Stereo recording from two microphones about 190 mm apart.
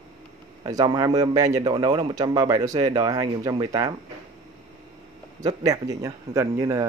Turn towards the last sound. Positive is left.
turn(degrees=-15)  # may be behind; listen again after turning